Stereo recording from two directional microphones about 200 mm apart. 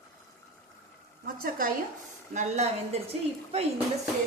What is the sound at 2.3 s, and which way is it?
Speech, 35° right (ahead or behind).